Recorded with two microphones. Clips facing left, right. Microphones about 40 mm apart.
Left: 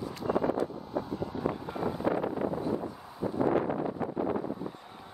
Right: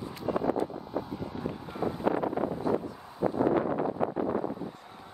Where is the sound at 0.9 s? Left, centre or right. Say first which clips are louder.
Left 1 dB; centre.